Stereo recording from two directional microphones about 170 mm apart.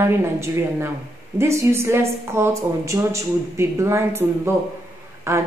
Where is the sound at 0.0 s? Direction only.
15° right (ahead or behind).